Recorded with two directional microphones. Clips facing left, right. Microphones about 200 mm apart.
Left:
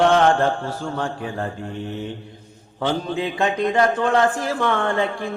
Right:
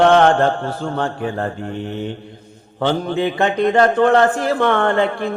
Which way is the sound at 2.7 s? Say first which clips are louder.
Right 4 dB; 60° right (ahead or behind).